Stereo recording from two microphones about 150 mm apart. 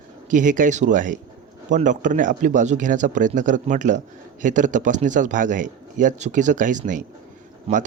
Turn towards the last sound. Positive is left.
turn(degrees=-40)  # may be behind; listen again after turning